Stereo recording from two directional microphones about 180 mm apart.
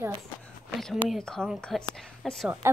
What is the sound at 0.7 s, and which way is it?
A woman's voice, centre (ahead or behind).